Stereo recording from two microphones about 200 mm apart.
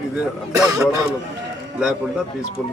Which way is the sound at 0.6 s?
15° right (ahead or behind).